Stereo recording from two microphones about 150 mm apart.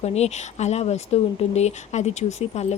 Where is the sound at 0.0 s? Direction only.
45° left (ahead or behind).